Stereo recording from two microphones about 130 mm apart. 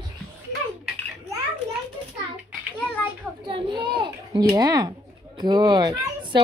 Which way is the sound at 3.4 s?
40° right (ahead or behind).